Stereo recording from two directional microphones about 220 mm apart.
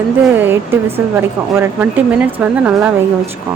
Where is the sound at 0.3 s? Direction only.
10° right (ahead or behind).